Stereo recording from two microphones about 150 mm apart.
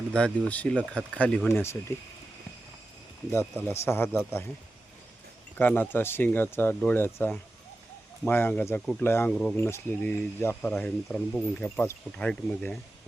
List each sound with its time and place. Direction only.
0.1 s speech: 10° left (ahead or behind)
1.9 s speech: 20° left (ahead or behind)
3.3 s speech: 15° left (ahead or behind)
5.5 s speech: 15° left (ahead or behind)